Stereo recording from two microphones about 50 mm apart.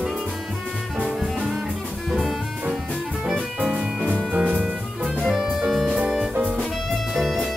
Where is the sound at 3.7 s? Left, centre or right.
Centre.